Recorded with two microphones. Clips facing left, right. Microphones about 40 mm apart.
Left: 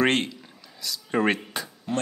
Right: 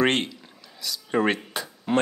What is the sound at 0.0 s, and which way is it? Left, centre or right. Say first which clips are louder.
Speech: even; centre.